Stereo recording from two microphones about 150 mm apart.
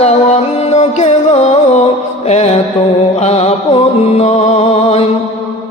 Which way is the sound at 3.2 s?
45° left (ahead or behind).